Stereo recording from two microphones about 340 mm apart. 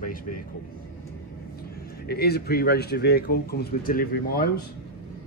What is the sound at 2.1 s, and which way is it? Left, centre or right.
Speech, left.